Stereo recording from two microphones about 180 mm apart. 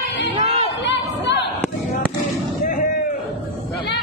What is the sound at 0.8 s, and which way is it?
Chatter, 75° left (ahead or behind).